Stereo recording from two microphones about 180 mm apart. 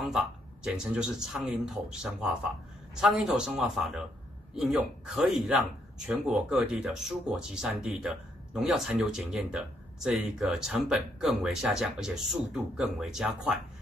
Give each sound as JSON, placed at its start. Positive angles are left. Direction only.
{"t": 0.7, "sound": "speech", "side_deg": -5}